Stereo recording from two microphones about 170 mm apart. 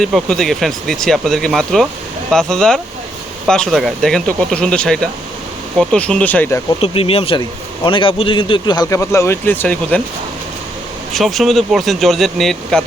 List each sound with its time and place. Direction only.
0.0 s speech: 5° left (ahead or behind)
6.8 s speech: 35° left (ahead or behind); by 10.0 s 10° left (ahead or behind)
11.1 s speech: centre (ahead or behind)